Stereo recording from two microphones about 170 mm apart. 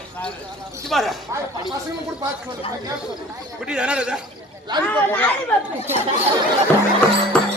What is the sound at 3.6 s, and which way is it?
Speech, 5° right (ahead or behind).